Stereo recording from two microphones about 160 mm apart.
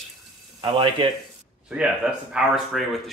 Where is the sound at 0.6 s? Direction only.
30° right (ahead or behind).